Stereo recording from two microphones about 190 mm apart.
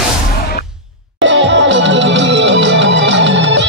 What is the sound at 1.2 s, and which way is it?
Music, 75° right (ahead or behind).